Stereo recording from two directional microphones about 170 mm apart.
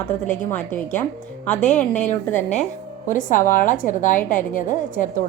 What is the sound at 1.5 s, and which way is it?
Speech, 45° left (ahead or behind).